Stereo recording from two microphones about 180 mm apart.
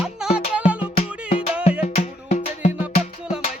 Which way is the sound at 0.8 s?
35° left (ahead or behind).